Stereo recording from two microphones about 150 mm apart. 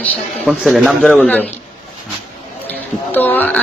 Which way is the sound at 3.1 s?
10° left (ahead or behind).